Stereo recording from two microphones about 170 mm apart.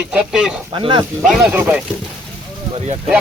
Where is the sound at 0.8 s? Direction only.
30° right (ahead or behind).